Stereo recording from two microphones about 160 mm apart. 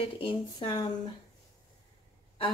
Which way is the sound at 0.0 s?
30° left (ahead or behind).